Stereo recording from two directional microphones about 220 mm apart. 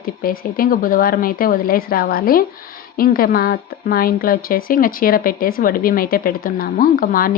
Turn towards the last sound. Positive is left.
turn(degrees=40)  # may be behind; listen again after turning